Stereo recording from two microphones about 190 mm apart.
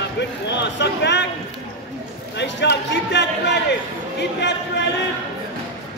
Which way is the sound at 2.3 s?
65° left (ahead or behind).